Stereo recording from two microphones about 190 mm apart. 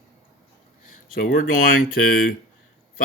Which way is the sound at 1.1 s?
45° left (ahead or behind).